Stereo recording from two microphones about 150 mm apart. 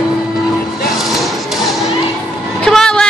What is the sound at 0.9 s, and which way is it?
Music, centre (ahead or behind).